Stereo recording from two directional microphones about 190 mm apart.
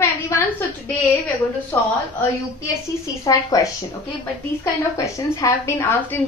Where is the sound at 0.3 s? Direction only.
15° left (ahead or behind).